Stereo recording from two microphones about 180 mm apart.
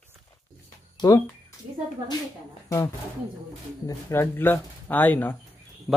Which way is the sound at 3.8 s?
15° left (ahead or behind).